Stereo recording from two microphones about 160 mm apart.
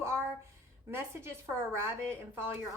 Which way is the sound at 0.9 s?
15° right (ahead or behind).